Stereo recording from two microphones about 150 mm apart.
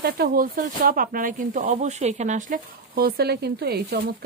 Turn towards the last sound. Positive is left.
turn(degrees=-90)